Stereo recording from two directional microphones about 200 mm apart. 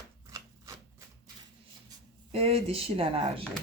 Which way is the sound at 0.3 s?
15° right (ahead or behind).